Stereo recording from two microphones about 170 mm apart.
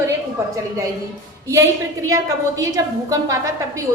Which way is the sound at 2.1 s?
20° right (ahead or behind).